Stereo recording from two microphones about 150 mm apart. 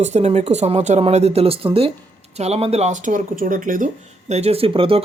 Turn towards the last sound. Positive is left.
turn(degrees=-35)  # may be behind; listen again after turning